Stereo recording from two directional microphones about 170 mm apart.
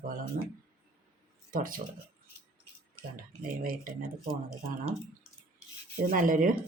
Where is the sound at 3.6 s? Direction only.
55° right (ahead or behind).